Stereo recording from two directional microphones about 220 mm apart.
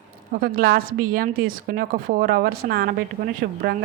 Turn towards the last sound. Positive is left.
turn(degrees=-45)  # may be behind; listen again after turning